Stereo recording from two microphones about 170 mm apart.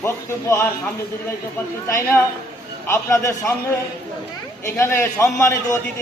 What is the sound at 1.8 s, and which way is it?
Speech, 15° left (ahead or behind).